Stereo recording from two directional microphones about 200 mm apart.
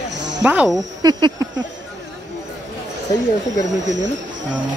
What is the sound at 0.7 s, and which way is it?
Speech, 20° right (ahead or behind).